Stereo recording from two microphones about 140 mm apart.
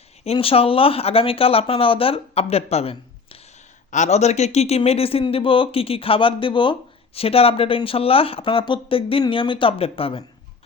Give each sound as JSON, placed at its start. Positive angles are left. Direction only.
{"t": 0.3, "sound": "speech", "side_deg": 40}
{"t": 3.9, "sound": "speech", "side_deg": 55}